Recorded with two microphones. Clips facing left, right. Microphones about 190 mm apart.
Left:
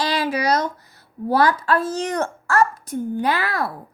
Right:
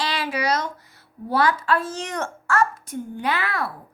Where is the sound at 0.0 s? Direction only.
40° left (ahead or behind).